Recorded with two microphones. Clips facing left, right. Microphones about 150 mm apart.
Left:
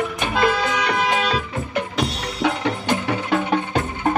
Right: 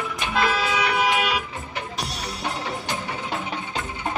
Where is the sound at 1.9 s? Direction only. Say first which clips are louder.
Left 7 dB; 70° left (ahead or behind).